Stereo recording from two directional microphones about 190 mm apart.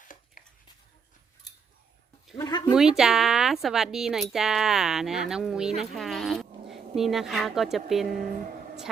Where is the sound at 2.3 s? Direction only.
20° left (ahead or behind).